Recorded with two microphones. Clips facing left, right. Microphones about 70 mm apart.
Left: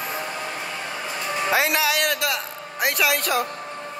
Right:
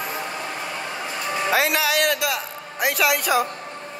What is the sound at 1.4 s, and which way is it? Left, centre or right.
Music, centre.